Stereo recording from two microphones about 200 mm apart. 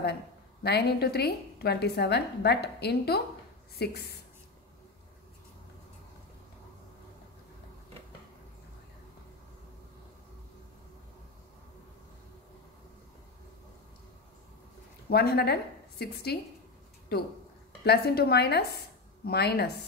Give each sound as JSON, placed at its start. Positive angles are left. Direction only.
{"t": 0.7, "sound": "a woman's voice", "side_deg": 55}
{"t": 15.0, "sound": "a woman's voice", "side_deg": 55}